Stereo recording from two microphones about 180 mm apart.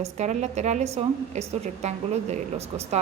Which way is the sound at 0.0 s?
40° right (ahead or behind).